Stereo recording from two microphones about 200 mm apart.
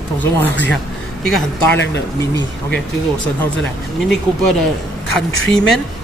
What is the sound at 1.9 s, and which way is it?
Speech, 60° left (ahead or behind).